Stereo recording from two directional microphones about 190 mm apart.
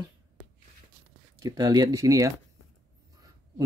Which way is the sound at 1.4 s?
20° right (ahead or behind).